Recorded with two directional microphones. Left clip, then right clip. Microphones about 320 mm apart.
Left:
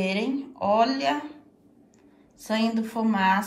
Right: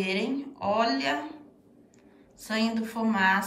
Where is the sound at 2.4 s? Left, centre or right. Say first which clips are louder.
Left 3 dB; centre.